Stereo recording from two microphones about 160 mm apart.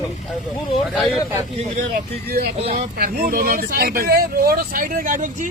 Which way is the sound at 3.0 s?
65° right (ahead or behind).